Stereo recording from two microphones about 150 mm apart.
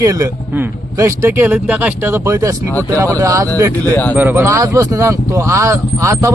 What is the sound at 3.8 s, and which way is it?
Speech, 10° left (ahead or behind).